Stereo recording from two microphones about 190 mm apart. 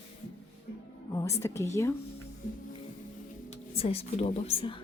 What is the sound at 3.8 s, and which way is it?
Speech, 30° left (ahead or behind).